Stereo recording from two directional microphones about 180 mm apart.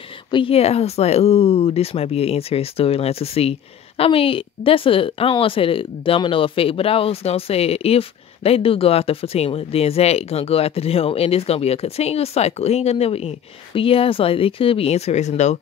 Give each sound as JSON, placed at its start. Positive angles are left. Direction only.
{"t": 0.3, "sound": "speech", "side_deg": 30}